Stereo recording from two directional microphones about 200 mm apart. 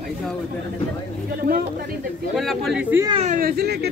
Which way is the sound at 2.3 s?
Centre (ahead or behind).